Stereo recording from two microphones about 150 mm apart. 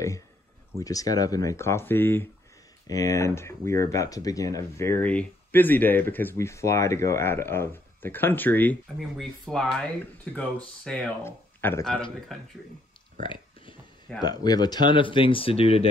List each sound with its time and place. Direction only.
0.7 s speech: 25° left (ahead or behind)
9.1 s speech: centre (ahead or behind)
11.2 s speech: 15° left (ahead or behind)
12.3 s speech: centre (ahead or behind)
14.2 s speech: 25° left (ahead or behind)